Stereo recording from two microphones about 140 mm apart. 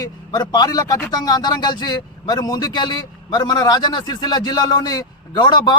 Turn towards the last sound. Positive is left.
turn(degrees=30)  # may be behind; listen again after turning